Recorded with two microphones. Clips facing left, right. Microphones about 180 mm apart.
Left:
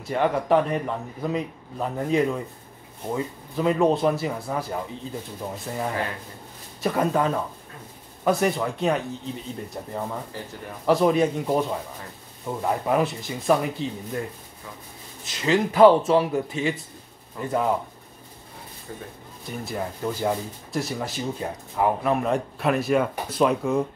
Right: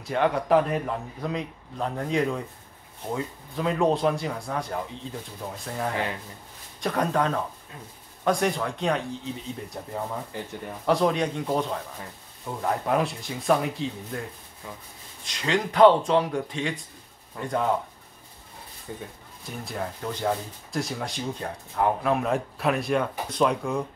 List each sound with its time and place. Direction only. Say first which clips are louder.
0.0 s speech: left 1 dB; centre (ahead or behind)
10.9 s speech: left 4 dB; 5° left (ahead or behind)
15.2 s speech: left 4 dB; 5° left (ahead or behind)
18.9 s speech: right 1 dB; 20° right (ahead or behind)
19.6 s speech: left 3 dB; 5° left (ahead or behind)